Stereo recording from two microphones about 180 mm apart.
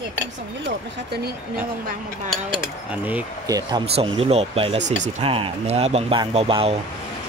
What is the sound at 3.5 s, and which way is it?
Speech, 20° right (ahead or behind).